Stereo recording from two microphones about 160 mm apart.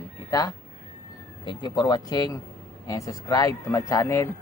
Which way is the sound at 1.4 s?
25° left (ahead or behind).